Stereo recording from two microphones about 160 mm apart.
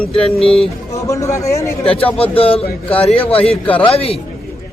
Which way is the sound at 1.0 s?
20° left (ahead or behind).